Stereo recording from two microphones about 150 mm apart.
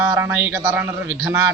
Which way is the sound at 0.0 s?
15° right (ahead or behind).